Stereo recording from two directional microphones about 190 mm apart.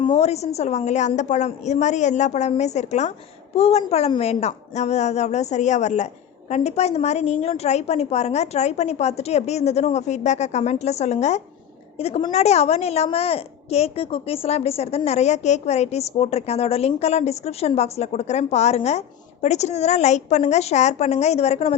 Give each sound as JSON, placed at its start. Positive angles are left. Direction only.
{"t": 0.0, "sound": "a woman's voice", "side_deg": 30}